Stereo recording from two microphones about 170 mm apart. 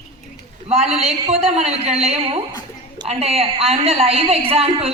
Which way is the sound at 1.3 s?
35° right (ahead or behind).